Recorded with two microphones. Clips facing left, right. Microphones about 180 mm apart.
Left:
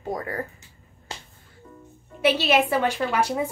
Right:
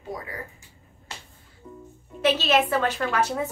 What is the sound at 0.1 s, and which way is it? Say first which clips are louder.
Speech: left 5 dB; 50° left (ahead or behind).